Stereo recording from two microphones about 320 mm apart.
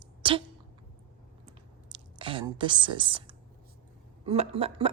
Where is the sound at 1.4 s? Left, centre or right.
Centre.